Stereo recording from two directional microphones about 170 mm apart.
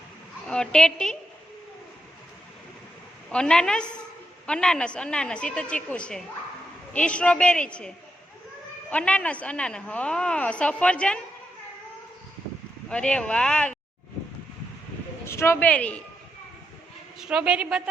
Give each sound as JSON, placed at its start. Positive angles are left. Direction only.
{"t": 0.4, "sound": "speech", "side_deg": 5}
{"t": 3.2, "sound": "a woman's voice", "side_deg": 5}
{"t": 12.9, "sound": "a woman's voice", "side_deg": 5}
{"t": 15.3, "sound": "a woman's voice", "side_deg": 15}
{"t": 17.2, "sound": "a woman's voice", "side_deg": -5}